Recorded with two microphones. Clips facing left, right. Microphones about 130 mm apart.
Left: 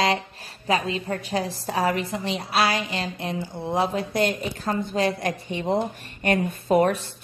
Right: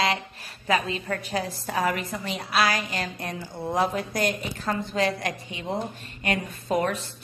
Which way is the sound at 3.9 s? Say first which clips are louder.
Left 3 dB; 30° left (ahead or behind).